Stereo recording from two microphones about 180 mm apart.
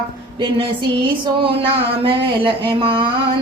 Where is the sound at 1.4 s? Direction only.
30° right (ahead or behind).